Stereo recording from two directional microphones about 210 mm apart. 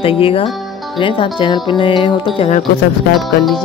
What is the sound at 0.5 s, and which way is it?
Music, centre (ahead or behind).